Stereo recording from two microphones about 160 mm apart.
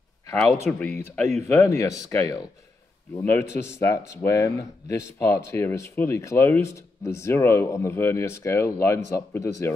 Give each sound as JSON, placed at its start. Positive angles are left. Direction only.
{"t": 0.7, "sound": "speech", "side_deg": 10}